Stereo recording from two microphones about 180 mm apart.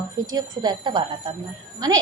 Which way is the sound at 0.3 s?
25° right (ahead or behind).